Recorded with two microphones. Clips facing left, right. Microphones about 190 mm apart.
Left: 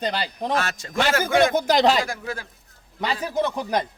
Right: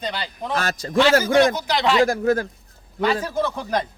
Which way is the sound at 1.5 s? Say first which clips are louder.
Left 3 dB; 45° left (ahead or behind).